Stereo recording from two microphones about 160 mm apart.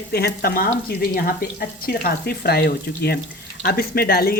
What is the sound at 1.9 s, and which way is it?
Speech, 80° left.